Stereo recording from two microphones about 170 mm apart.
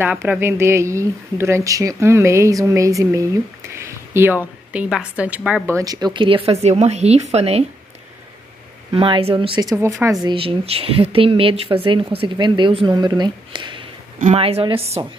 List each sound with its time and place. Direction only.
0.0 s a woman's voice: 10° right (ahead or behind)
5.8 s speech: 20° right (ahead or behind); by 7.6 s 40° right (ahead or behind)
8.9 s speech: 30° right (ahead or behind)
10.2 s speech: 30° right (ahead or behind)